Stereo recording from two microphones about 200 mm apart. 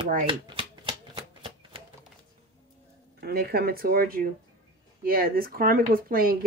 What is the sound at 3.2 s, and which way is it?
Speech, 50° right (ahead or behind).